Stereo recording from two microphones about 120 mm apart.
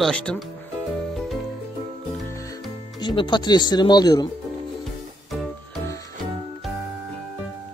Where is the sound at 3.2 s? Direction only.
40° left (ahead or behind).